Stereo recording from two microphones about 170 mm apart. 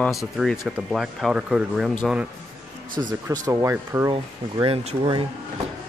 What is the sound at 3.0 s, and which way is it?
Speech, 25° right (ahead or behind).